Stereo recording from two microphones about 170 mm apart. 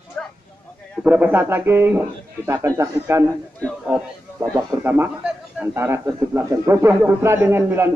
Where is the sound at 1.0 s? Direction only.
10° right (ahead or behind).